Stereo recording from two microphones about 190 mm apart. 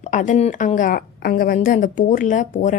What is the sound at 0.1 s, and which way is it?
A woman's voice, 40° left (ahead or behind).